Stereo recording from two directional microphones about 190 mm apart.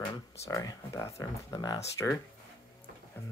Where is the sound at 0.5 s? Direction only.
15° left (ahead or behind).